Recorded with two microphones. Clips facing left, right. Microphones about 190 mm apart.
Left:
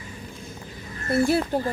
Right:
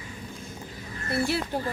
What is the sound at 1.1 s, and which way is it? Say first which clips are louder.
Speech: left 6 dB; 50° left (ahead or behind).